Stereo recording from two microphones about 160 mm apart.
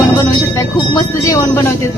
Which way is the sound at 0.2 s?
20° left (ahead or behind).